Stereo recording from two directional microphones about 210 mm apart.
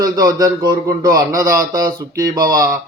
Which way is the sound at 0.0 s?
20° right (ahead or behind).